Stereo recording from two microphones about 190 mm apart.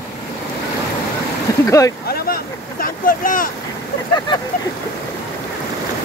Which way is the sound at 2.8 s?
45° left (ahead or behind).